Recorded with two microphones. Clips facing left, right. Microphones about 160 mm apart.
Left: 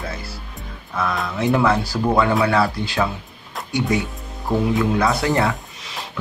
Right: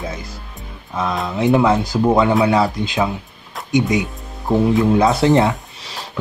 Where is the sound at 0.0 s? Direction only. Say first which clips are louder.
Right 2 dB; 20° right (ahead or behind).